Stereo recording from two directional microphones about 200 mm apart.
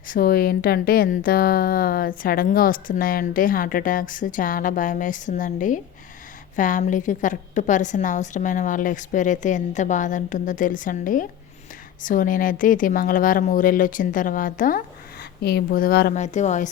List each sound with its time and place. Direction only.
0.1 s a woman's voice: 45° left (ahead or behind)
15.2 s speech: 55° left (ahead or behind)
16.1 s a woman's voice: 35° left (ahead or behind)